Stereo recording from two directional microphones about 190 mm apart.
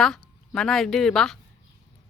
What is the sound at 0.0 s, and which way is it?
Speech, centre (ahead or behind).